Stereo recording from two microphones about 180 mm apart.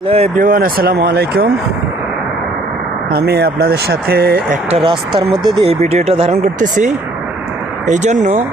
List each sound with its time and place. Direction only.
0.1 s speech: 35° right (ahead or behind)
0.4 s speech: 55° right (ahead or behind)
3.1 s speech: 60° right (ahead or behind)
4.7 s speech: 30° right (ahead or behind)